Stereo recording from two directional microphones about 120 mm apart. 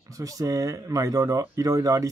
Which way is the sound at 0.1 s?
30° right (ahead or behind).